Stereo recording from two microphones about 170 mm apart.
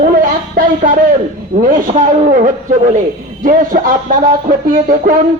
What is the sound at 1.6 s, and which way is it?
Speech, 55° right (ahead or behind).